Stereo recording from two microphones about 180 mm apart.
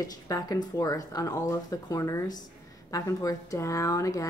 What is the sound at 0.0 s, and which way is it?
A woman's voice, 20° left (ahead or behind).